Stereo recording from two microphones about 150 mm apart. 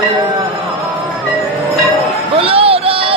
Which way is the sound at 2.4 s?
40° right (ahead or behind).